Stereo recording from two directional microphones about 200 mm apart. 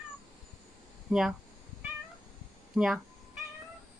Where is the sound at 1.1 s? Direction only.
5° right (ahead or behind).